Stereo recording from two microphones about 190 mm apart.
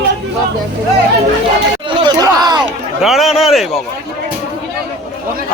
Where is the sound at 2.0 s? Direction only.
20° right (ahead or behind).